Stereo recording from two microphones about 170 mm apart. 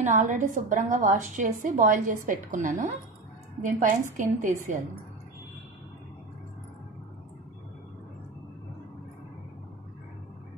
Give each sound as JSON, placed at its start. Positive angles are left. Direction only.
{"t": 0.0, "sound": "a woman's voice", "side_deg": -45}